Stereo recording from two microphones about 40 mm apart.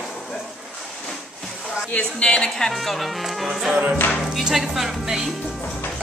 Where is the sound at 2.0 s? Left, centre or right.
Left.